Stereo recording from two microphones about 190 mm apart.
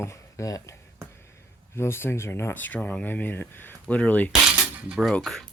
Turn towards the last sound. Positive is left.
turn(degrees=0)  # may be behind; listen again after turning